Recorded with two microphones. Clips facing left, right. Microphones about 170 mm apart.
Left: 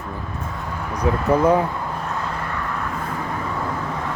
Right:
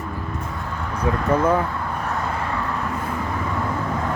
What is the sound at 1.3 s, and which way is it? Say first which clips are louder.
Speech: left 3 dB; 10° left (ahead or behind).